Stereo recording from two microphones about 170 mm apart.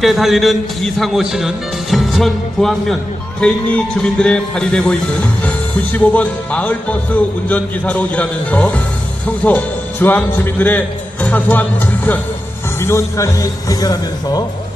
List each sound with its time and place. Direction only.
0.0 s a man's voice: centre (ahead or behind); by 14.4 s 20° left (ahead or behind)